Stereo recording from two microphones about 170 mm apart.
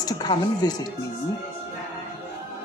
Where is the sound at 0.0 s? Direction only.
25° left (ahead or behind).